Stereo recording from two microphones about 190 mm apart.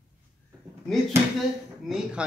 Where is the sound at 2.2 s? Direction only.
5° right (ahead or behind).